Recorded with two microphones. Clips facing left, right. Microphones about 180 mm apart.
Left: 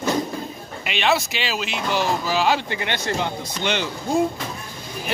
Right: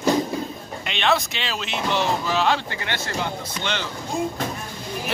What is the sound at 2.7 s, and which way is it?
Speech, 20° left (ahead or behind).